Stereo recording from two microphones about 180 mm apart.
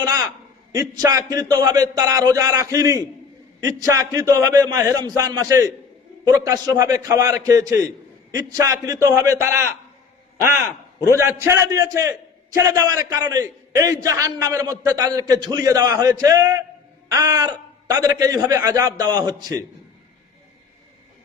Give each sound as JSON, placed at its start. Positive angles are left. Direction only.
{"t": 0.0, "sound": "a man's voice", "side_deg": -20}
{"t": 11.0, "sound": "a man's voice", "side_deg": -15}